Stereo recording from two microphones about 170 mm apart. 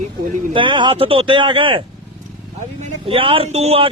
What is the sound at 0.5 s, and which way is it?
Speech, 30° right (ahead or behind).